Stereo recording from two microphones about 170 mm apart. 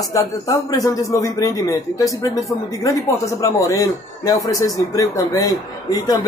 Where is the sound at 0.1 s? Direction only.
20° left (ahead or behind).